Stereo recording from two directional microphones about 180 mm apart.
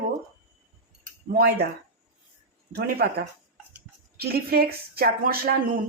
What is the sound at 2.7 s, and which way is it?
Speech, 60° right (ahead or behind).